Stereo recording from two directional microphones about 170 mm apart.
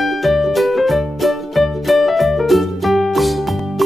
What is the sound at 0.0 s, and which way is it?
Music, centre (ahead or behind).